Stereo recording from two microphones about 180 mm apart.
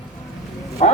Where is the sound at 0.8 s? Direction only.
40° left (ahead or behind).